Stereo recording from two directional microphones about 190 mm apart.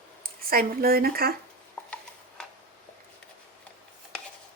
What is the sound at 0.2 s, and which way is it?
Speech, 50° right (ahead or behind).